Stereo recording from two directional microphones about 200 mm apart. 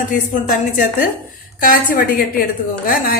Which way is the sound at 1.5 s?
45° left (ahead or behind).